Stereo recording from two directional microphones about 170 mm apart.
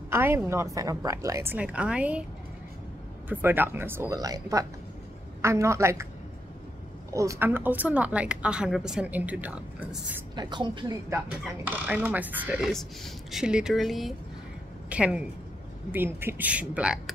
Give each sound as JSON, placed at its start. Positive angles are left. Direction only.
{"t": 0.1, "sound": "a woman's voice", "side_deg": -15}
{"t": 3.3, "sound": "speech", "side_deg": -10}
{"t": 7.1, "sound": "speech", "side_deg": -20}
{"t": 10.3, "sound": "speech", "side_deg": -25}